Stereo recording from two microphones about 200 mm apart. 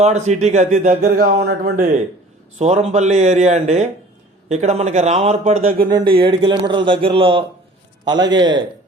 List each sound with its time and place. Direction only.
0.0 s a man's voice: 35° right (ahead or behind)
2.6 s a man's voice: 35° right (ahead or behind)